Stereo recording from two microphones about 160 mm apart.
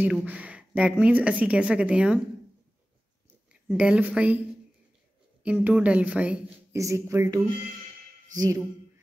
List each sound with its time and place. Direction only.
0.0 s a woman's voice: 10° right (ahead or behind)
3.6 s a woman's voice: 10° right (ahead or behind)
5.4 s a woman's voice: 10° right (ahead or behind)
6.8 s speech: 20° right (ahead or behind)